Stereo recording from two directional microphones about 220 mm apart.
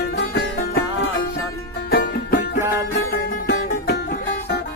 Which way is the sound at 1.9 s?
40° left (ahead or behind).